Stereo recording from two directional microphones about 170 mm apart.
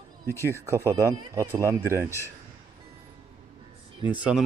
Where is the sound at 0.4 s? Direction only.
15° right (ahead or behind).